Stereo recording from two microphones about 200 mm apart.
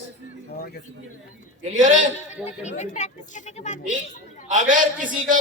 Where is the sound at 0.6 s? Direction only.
50° left (ahead or behind).